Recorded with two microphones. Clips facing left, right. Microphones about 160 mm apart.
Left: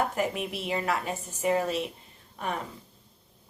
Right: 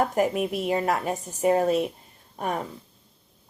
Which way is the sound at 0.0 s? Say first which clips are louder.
Right 5 dB; 45° right (ahead or behind).